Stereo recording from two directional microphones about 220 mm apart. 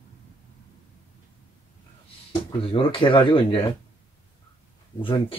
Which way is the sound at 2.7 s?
25° left (ahead or behind).